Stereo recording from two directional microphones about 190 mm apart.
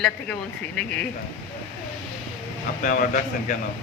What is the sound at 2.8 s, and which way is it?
Speech, 45° left (ahead or behind).